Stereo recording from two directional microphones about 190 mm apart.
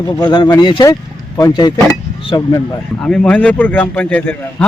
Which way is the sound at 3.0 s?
5° left (ahead or behind).